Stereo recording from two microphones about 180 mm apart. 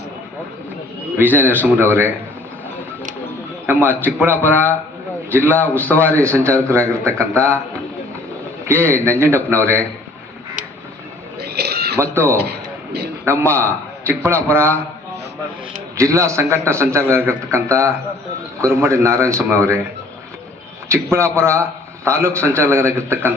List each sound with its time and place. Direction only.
1.2 s a man's voice: 10° right (ahead or behind)
3.7 s a man's voice: 10° right (ahead or behind)
4.5 s a man's voice: 10° left (ahead or behind)
5.3 s a man's voice: 10° right (ahead or behind)
5.5 s a man's voice: 10° left (ahead or behind)
6.2 s a man's voice: 15° right (ahead or behind)
8.6 s a man's voice: 15° right (ahead or behind)
11.3 s a sound: 60° right (ahead or behind)
11.9 s a man's voice: 15° right (ahead or behind)
12.4 s a sound: 65° right (ahead or behind)
13.4 s a man's voice: 15° right (ahead or behind)
16.0 s a man's voice: 15° right (ahead or behind)
20.9 s a man's voice: 15° right (ahead or behind)